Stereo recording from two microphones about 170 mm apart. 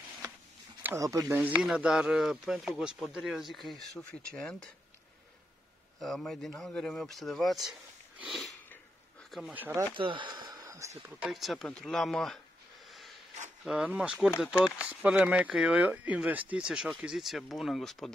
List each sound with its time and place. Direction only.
0.8 s speech: 20° right (ahead or behind); by 4.6 s 5° left (ahead or behind)
5.9 s speech: centre (ahead or behind)
8.2 s sniff: centre (ahead or behind)
9.3 s speech: 5° right (ahead or behind)
9.9 s speech: 30° right (ahead or behind)
10.6 s a sound: 15° right (ahead or behind)
11.0 s speech: 5° right (ahead or behind)
13.7 s speech: 5° right (ahead or behind)